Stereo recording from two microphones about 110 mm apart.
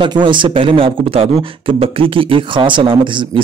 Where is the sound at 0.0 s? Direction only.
45° right (ahead or behind).